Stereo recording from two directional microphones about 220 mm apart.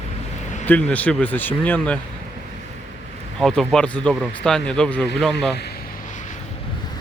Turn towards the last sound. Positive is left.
turn(degrees=35)  # may be behind; listen again after turning